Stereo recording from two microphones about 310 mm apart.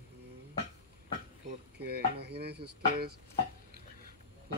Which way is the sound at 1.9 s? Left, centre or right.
Right.